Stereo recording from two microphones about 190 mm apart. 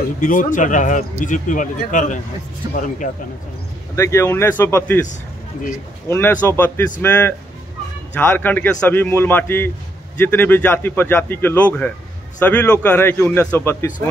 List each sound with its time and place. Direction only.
0.2 s speech: 45° left (ahead or behind)
2.6 s speech: 20° right (ahead or behind)
3.9 s a man's voice: 15° left (ahead or behind)
6.0 s a man's voice: 10° left (ahead or behind)